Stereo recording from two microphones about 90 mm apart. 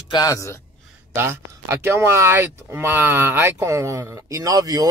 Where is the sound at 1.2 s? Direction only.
30° right (ahead or behind).